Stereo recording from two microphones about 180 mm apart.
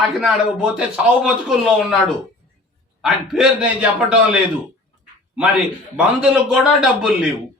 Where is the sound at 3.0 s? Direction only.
5° right (ahead or behind).